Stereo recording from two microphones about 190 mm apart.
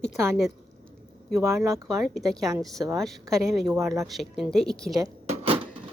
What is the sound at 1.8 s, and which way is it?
Speech, centre (ahead or behind).